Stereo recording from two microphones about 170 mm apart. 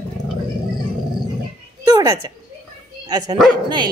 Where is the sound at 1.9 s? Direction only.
20° right (ahead or behind).